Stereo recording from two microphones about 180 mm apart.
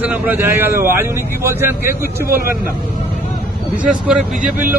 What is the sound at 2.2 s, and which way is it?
Speech, 55° right (ahead or behind).